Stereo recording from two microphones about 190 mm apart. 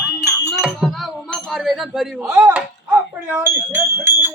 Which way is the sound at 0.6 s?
Centre (ahead or behind).